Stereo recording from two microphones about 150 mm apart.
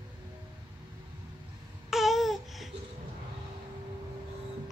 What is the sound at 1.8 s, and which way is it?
Babbling, centre (ahead or behind).